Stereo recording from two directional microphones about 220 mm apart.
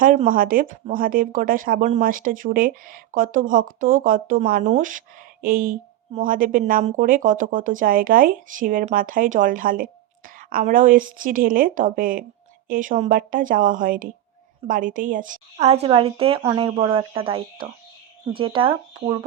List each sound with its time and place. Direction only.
0.0 s a woman's voice: 35° right (ahead or behind); by 19.2 s 20° right (ahead or behind)